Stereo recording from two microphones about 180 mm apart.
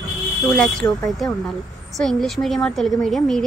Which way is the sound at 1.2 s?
Centre (ahead or behind).